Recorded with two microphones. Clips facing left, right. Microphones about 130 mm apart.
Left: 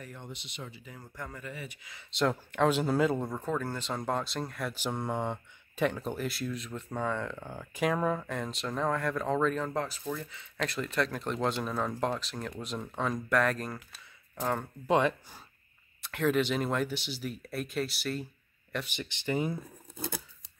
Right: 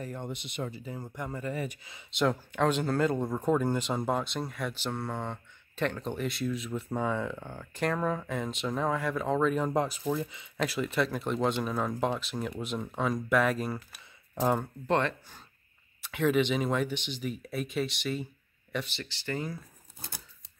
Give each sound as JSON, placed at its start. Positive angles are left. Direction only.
{"t": 0.0, "sound": "speech", "side_deg": -45}
{"t": 0.9, "sound": "speech", "side_deg": -20}
{"t": 1.4, "sound": "speech", "side_deg": -45}
{"t": 2.1, "sound": "speech", "side_deg": 0}
{"t": 3.3, "sound": "speech", "side_deg": -15}
{"t": 4.7, "sound": "speech", "side_deg": 15}
{"t": 7.5, "sound": "speech", "side_deg": 10}
{"t": 13.9, "sound": "a sound", "side_deg": -15}
{"t": 14.9, "sound": "speech", "side_deg": 10}
{"t": 16.0, "sound": "speech", "side_deg": 0}
{"t": 18.9, "sound": "speech", "side_deg": 20}